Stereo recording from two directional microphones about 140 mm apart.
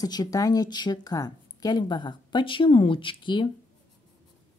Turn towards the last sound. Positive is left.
turn(degrees=35)  # may be behind; listen again after turning